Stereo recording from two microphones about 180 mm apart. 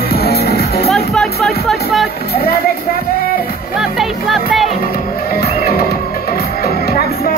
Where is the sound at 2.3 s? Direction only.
60° left (ahead or behind).